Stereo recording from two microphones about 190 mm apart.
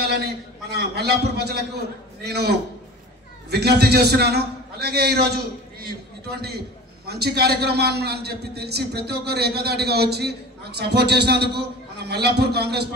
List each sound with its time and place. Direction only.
0.0 s a man's voice: 60° right (ahead or behind)